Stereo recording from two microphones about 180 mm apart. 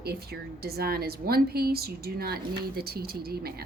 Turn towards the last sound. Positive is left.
turn(degrees=-60)  # may be behind; listen again after turning